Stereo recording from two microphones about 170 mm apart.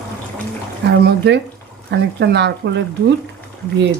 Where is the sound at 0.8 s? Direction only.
85° right.